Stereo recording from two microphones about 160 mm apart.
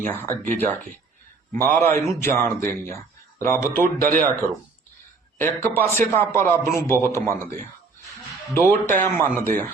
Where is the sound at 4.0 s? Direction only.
65° right (ahead or behind).